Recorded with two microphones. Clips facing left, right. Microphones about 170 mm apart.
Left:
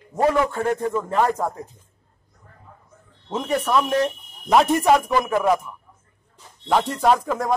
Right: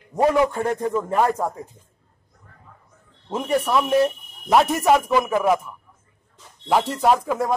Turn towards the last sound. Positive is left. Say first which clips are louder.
# even
turn(degrees=-5)  # may be behind; listen again after turning